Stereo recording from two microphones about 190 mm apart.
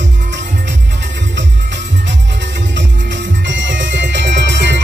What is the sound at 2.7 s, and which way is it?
Music, 70° right (ahead or behind).